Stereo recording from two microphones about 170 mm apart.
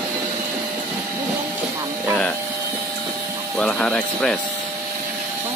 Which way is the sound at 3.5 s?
5° left (ahead or behind).